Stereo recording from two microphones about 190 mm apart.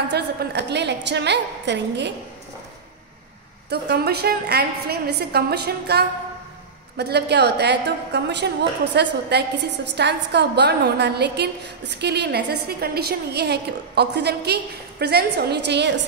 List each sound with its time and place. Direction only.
0.1 s a woman's voice: 60° right (ahead or behind)
3.7 s a woman's voice: 60° right (ahead or behind)